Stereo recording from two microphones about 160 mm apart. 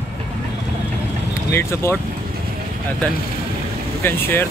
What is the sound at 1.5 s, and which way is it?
Speech, 15° left (ahead or behind).